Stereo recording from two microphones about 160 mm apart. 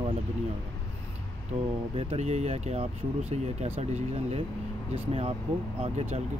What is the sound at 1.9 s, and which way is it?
Speech, 45° right (ahead or behind).